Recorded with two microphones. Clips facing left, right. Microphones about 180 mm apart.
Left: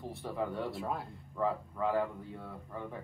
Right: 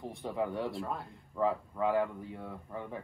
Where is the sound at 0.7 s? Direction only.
Centre (ahead or behind).